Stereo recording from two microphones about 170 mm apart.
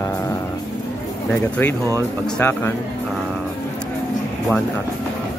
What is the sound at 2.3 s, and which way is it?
Speech, 15° left (ahead or behind).